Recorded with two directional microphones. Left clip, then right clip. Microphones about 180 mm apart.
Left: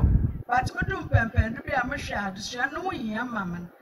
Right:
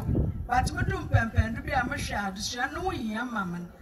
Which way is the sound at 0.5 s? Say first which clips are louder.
Left 3 dB; 20° left (ahead or behind).